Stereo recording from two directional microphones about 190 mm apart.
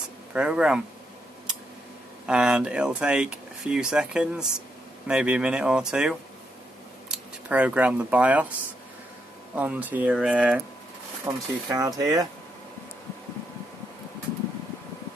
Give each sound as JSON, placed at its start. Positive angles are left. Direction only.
{"t": 0.3, "sound": "speech", "side_deg": -5}
{"t": 2.2, "sound": "speech", "side_deg": -5}
{"t": 9.6, "sound": "speech", "side_deg": -10}